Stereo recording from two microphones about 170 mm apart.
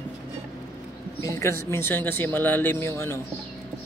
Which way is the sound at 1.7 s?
15° left (ahead or behind).